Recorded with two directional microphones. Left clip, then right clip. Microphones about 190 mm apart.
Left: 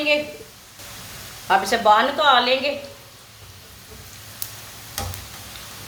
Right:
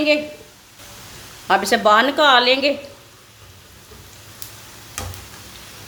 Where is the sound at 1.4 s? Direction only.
50° right (ahead or behind).